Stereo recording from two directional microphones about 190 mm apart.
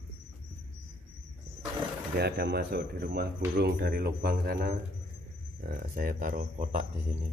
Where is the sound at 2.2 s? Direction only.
55° right (ahead or behind); by 6.8 s 40° right (ahead or behind).